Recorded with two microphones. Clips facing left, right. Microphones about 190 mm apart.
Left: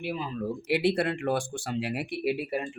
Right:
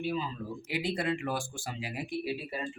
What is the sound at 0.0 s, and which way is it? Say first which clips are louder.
Speech: left 2 dB; 65° left (ahead or behind).